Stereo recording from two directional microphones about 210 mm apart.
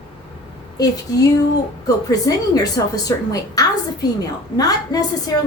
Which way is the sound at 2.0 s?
15° left (ahead or behind).